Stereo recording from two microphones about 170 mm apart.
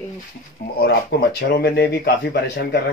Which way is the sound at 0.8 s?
65° left (ahead or behind).